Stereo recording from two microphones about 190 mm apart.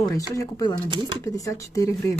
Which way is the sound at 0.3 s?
20° left (ahead or behind).